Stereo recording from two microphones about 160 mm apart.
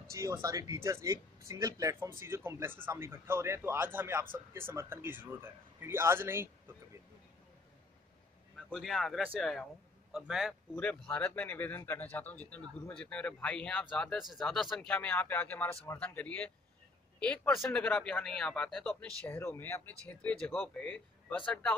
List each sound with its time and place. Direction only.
0.1 s speech: 20° right (ahead or behind)
8.5 s speech: centre (ahead or behind)
10.8 s speech: 10° left (ahead or behind)